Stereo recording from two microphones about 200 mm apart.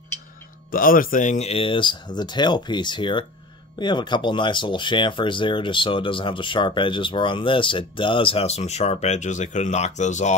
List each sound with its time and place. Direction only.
0.7 s speech: 45° left (ahead or behind)